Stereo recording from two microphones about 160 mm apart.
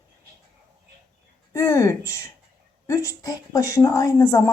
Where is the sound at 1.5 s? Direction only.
20° left (ahead or behind).